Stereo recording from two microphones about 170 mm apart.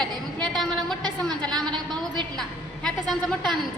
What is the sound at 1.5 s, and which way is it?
Speech, 25° right (ahead or behind).